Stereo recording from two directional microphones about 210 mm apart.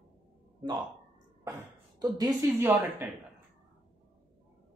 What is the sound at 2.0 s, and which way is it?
Speech, 20° right (ahead or behind).